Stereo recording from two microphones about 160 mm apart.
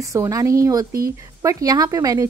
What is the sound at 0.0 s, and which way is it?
A woman's voice, 20° right (ahead or behind).